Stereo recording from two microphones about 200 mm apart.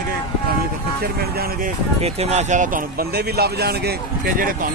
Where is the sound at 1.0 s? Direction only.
50° right (ahead or behind).